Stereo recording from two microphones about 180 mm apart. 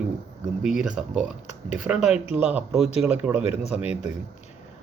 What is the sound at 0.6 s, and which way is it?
A woman's voice, 5° right (ahead or behind).